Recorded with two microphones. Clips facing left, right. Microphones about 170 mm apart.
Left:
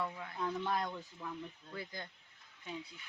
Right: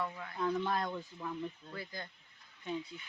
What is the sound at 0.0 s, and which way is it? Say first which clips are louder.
Speech: right 3 dB; 10° left (ahead or behind).